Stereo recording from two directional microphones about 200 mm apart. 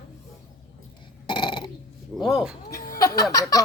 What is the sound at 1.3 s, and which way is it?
Burping, 25° left (ahead or behind).